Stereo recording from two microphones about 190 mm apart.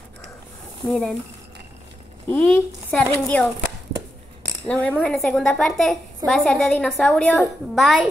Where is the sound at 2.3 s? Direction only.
5° left (ahead or behind).